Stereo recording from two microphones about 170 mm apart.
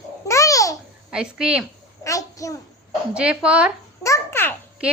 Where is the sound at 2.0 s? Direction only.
20° left (ahead or behind).